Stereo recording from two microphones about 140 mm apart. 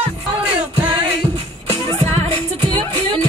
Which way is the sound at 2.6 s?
35° right (ahead or behind).